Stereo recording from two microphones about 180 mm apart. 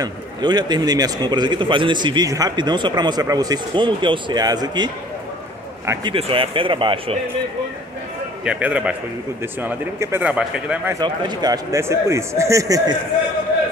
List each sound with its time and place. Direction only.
0.0 s a man's voice: 25° right (ahead or behind)
6.1 s a man's voice: 30° right (ahead or behind)
8.5 s a man's voice: 5° right (ahead or behind)
11.0 s a man's voice: 25° right (ahead or behind)